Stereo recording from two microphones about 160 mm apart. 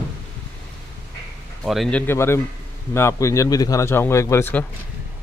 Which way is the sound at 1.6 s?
Centre (ahead or behind).